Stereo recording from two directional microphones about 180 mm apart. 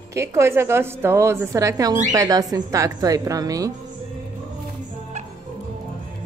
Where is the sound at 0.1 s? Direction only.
15° right (ahead or behind).